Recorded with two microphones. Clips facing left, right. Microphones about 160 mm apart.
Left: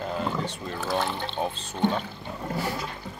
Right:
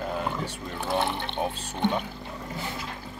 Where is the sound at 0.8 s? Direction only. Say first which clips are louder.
Right 1 dB; 25° right (ahead or behind).